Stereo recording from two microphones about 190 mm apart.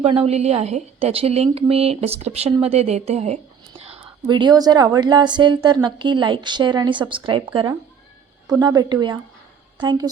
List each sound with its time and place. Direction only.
0.0 s a woman's voice: 30° right (ahead or behind)